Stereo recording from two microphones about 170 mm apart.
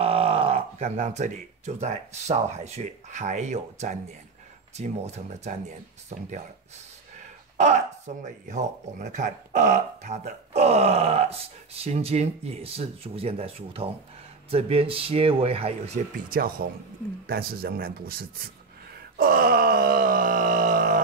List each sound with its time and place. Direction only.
0.0 s speech: 35° right (ahead or behind)
7.5 s speech: 40° right (ahead or behind)
16.3 s groan: 60° right (ahead or behind)